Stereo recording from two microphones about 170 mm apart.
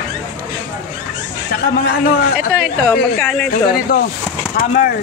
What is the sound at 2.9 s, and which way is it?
Speech, 10° left (ahead or behind).